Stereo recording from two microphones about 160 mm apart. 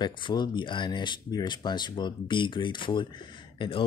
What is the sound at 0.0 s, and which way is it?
Speech, 25° left (ahead or behind).